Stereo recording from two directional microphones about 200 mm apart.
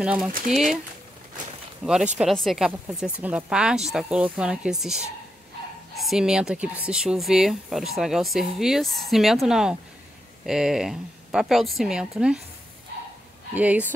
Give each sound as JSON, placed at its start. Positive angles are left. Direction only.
{"t": 0.0, "sound": "speech", "side_deg": -5}
{"t": 1.9, "sound": "speech", "side_deg": -5}
{"t": 13.6, "sound": "speech", "side_deg": -5}